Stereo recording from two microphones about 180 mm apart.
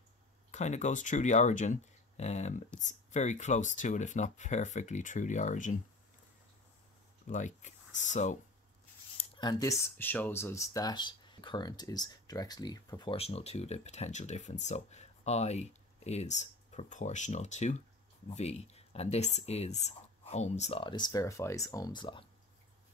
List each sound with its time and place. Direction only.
0.5 s speech: 40° left (ahead or behind)
7.2 s speech: 40° left (ahead or behind)
9.2 s speech: 20° left (ahead or behind)